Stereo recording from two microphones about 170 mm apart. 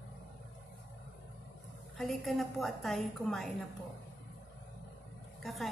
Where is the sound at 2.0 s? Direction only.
Centre (ahead or behind).